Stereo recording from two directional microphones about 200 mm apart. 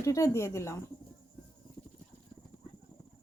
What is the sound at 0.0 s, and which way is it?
Speech, 15° left (ahead or behind).